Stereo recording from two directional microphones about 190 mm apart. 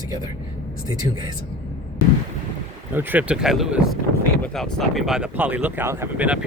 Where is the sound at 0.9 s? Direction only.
20° right (ahead or behind).